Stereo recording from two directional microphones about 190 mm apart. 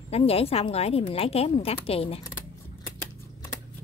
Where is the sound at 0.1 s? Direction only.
30° left (ahead or behind).